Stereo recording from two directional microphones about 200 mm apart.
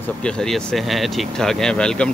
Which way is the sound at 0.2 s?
5° left (ahead or behind).